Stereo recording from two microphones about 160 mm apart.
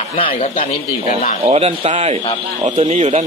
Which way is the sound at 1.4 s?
40° right (ahead or behind).